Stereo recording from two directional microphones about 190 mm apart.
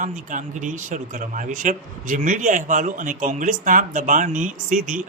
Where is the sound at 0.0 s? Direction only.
40° right (ahead or behind).